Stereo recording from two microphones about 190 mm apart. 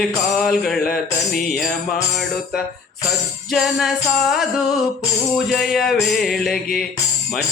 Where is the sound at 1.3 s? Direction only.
50° left (ahead or behind).